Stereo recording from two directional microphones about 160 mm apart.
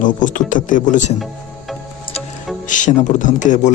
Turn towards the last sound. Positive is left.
turn(degrees=50)  # may be behind; listen again after turning